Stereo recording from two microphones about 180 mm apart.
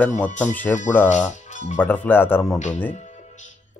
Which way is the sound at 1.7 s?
10° left (ahead or behind).